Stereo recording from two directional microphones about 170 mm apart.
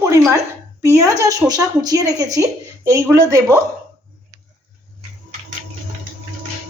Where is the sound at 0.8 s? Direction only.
20° right (ahead or behind).